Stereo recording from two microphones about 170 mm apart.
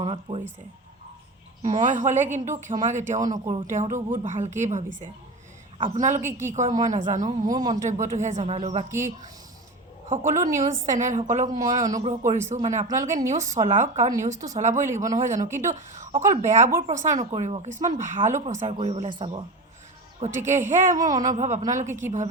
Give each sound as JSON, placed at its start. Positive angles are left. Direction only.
{"t": 0.0, "sound": "speech", "side_deg": -35}
{"t": 1.6, "sound": "speech", "side_deg": -50}
{"t": 6.0, "sound": "speech", "side_deg": -45}
{"t": 8.9, "sound": "speech", "side_deg": -15}
{"t": 10.1, "sound": "speech", "side_deg": -45}
{"t": 15.4, "sound": "speech", "side_deg": -15}
{"t": 15.7, "sound": "speech", "side_deg": -45}
{"t": 20.4, "sound": "speech", "side_deg": -45}